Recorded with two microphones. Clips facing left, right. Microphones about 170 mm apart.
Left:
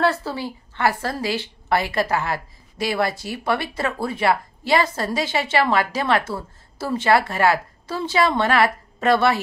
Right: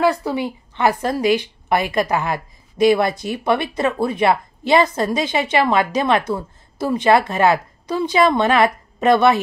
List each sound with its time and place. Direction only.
0.0 s a woman's voice: 15° right (ahead or behind)